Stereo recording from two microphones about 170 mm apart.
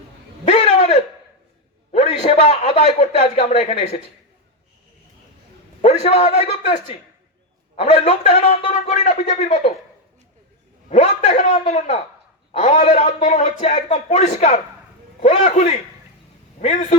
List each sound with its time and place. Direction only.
0.4 s a sound: 40° left (ahead or behind)
1.9 s a man's voice: 40° left (ahead or behind)
5.8 s a man's voice: 40° left (ahead or behind)
7.8 s a man's voice: 35° left (ahead or behind)
10.8 s a man's voice: 45° left (ahead or behind)